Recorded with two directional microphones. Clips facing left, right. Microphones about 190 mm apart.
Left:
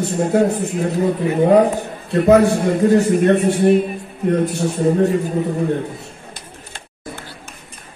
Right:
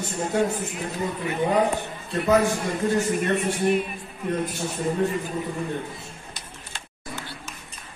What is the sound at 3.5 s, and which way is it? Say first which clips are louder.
Speech: left 9 dB; 40° left (ahead or behind).